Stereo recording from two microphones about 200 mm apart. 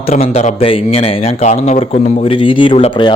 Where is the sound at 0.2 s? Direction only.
30° left (ahead or behind).